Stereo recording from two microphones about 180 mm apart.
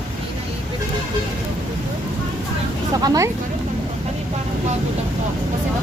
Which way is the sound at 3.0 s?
20° right (ahead or behind).